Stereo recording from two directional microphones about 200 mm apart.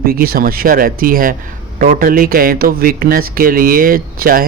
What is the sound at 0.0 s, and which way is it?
Speech, 50° right (ahead or behind).